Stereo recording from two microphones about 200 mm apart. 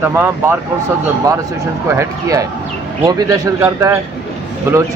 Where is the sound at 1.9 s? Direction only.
15° right (ahead or behind).